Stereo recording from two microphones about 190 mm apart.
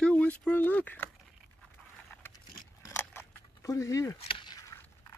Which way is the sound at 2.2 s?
15° left (ahead or behind).